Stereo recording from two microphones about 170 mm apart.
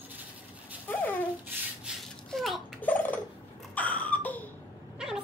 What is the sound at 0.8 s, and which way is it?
Babbling, 10° left (ahead or behind).